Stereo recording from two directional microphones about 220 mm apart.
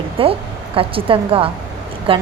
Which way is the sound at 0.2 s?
25° right (ahead or behind).